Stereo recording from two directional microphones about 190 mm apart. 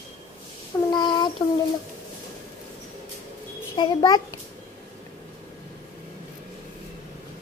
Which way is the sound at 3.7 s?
20° left (ahead or behind).